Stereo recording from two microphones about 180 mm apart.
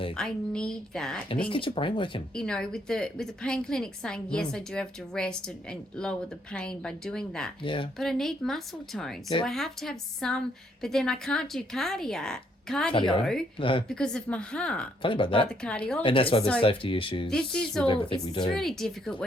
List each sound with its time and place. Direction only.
0.2 s a woman's voice: 5° left (ahead or behind)
1.5 s speech: 30° left (ahead or behind)
2.3 s a woman's voice: 5° left (ahead or behind)
7.6 s speech: 25° left (ahead or behind)
7.9 s a woman's voice: centre (ahead or behind)
12.9 s speech: 30° left (ahead or behind)
13.8 s a woman's voice: 5° left (ahead or behind)
15.0 s speech: 30° left (ahead or behind)
15.6 s a woman's voice: 5° left (ahead or behind)
16.0 s speech: 30° left (ahead or behind)
17.2 s a woman's voice: 5° left (ahead or behind)
17.8 s speech: 30° left (ahead or behind)
18.5 s a woman's voice: centre (ahead or behind)